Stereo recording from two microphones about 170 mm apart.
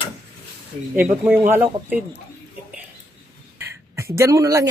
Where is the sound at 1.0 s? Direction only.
10° right (ahead or behind).